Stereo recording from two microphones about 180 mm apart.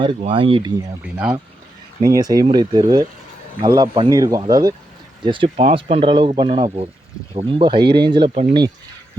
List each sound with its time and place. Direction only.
0.2 s speech: 30° right (ahead or behind)
1.0 s speech: 5° right (ahead or behind)
2.0 s speech: 20° right (ahead or behind)